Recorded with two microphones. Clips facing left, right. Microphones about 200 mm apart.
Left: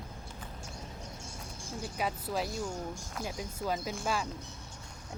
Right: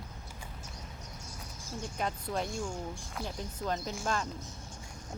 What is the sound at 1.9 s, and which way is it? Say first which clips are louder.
Speech: left 1 dB; 5° left (ahead or behind).